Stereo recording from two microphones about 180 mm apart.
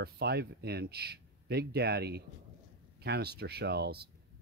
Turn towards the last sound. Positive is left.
turn(degrees=-60)  # may be behind; listen again after turning